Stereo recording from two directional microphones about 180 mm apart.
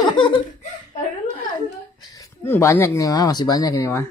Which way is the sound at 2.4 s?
10° left (ahead or behind).